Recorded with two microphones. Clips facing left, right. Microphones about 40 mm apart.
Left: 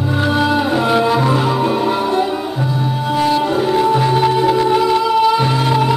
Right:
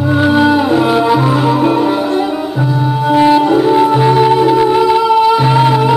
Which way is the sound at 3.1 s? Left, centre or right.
Right.